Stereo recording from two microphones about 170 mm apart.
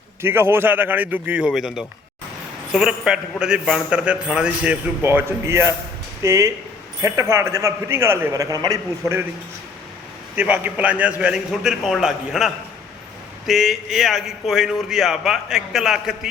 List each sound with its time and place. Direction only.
0.2 s a man's voice: 15° right (ahead or behind)
10.3 s a man's voice: 10° right (ahead or behind)
13.5 s a man's voice: centre (ahead or behind)